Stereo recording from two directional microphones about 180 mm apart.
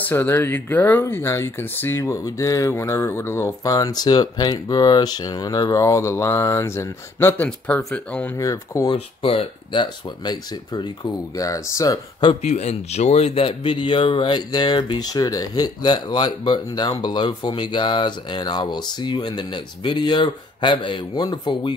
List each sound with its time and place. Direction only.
0.1 s speech: 10° left (ahead or behind)
8.9 s a man's voice: 35° left (ahead or behind)
12.3 s a man's voice: 40° left (ahead or behind)